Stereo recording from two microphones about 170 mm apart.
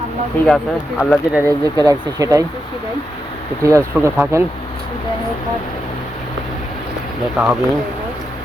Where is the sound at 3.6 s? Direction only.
15° right (ahead or behind).